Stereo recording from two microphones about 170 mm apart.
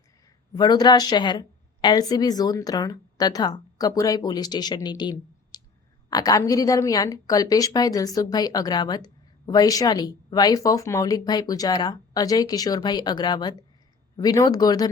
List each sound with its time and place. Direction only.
0.5 s a woman's voice: 25° left (ahead or behind)